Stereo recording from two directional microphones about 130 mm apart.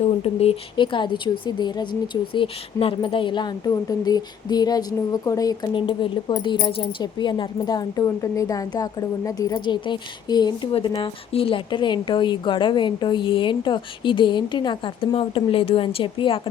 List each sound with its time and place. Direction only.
0.0 s speech: 50° left (ahead or behind)